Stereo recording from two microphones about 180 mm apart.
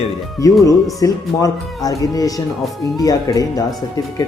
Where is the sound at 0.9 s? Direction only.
20° left (ahead or behind).